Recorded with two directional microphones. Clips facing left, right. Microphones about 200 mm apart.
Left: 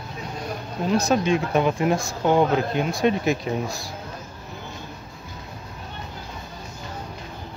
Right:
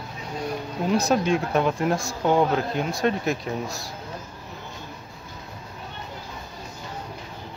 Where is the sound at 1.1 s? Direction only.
Centre (ahead or behind).